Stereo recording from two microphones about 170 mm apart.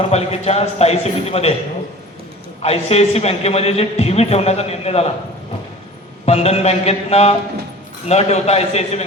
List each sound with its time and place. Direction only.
0.0 s a man's voice: 35° left (ahead or behind)
2.6 s a man's voice: 40° left (ahead or behind)
6.2 s a man's voice: 40° left (ahead or behind)